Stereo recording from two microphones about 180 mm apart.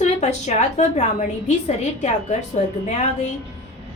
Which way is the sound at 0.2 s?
40° left (ahead or behind).